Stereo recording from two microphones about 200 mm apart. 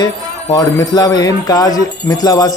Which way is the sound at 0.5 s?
20° left (ahead or behind).